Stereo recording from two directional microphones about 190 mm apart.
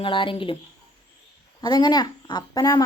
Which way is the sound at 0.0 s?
25° left (ahead or behind).